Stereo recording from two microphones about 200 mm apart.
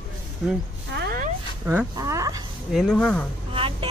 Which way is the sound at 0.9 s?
50° right (ahead or behind).